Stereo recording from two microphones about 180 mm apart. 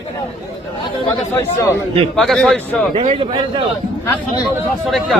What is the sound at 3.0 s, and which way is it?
Speech, 30° right (ahead or behind).